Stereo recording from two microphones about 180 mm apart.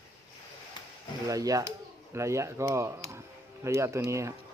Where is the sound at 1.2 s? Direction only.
20° right (ahead or behind).